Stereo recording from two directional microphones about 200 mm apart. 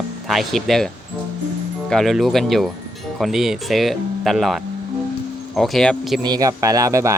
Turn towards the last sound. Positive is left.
turn(degrees=-15)  # may be behind; listen again after turning